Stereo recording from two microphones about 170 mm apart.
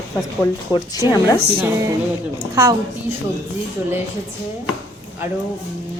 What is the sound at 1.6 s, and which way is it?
A woman's voice, 15° right (ahead or behind).